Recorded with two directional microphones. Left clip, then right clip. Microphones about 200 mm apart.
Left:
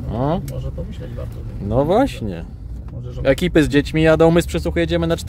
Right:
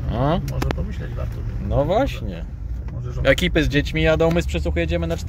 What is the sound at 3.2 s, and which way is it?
Speech, 25° left (ahead or behind).